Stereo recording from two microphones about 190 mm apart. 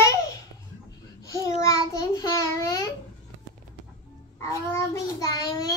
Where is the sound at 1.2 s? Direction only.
15° left (ahead or behind).